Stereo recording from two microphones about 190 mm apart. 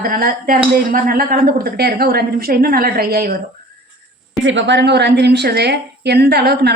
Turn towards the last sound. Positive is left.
turn(degrees=-60)  # may be behind; listen again after turning